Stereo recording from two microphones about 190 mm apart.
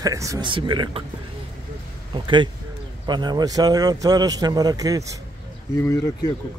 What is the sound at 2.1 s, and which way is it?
Speech, 25° right (ahead or behind).